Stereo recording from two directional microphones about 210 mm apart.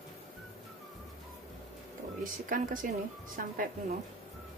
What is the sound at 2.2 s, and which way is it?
A woman's voice, 40° right (ahead or behind).